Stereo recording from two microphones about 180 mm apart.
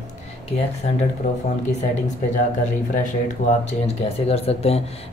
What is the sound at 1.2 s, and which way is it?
Speech, 40° left (ahead or behind).